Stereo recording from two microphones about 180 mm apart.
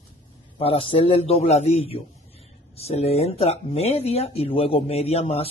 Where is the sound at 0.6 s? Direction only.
30° left (ahead or behind).